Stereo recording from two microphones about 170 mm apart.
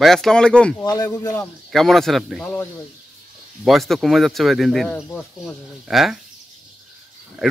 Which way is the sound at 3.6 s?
Centre (ahead or behind).